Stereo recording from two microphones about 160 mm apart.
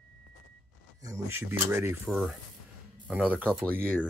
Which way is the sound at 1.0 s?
20° right (ahead or behind).